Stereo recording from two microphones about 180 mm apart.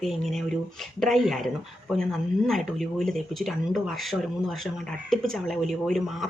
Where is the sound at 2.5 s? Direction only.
Centre (ahead or behind).